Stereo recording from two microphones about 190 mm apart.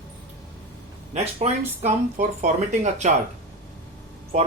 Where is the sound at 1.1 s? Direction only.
35° right (ahead or behind).